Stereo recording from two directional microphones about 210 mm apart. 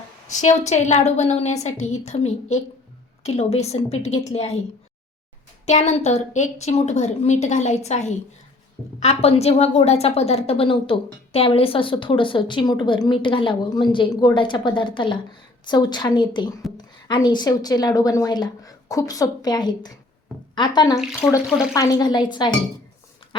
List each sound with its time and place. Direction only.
0.3 s a woman's voice: 35° left (ahead or behind)
5.6 s a woman's voice: 35° left (ahead or behind)